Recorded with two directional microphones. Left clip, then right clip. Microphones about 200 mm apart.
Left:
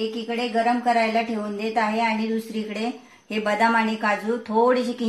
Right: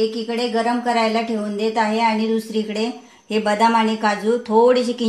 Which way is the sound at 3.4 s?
50° right (ahead or behind).